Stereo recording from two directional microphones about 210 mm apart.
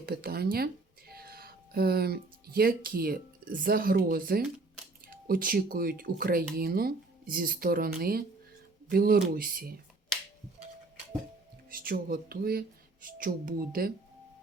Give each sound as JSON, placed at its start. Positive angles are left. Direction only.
{"t": 0.0, "sound": "speech", "side_deg": -45}
{"t": 11.7, "sound": "speech", "side_deg": -45}